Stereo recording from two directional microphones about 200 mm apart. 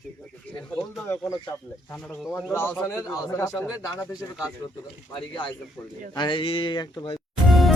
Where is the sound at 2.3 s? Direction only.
10° left (ahead or behind).